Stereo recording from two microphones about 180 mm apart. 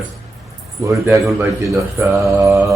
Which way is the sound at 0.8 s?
15° right (ahead or behind).